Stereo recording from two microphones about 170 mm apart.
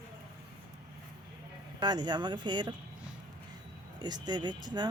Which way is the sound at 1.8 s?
25° right (ahead or behind).